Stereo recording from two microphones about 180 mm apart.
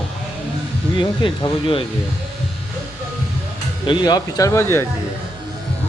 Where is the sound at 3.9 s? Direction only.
25° left (ahead or behind).